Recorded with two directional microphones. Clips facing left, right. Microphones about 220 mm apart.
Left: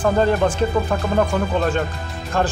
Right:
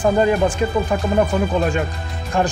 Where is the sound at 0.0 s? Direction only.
5° right (ahead or behind).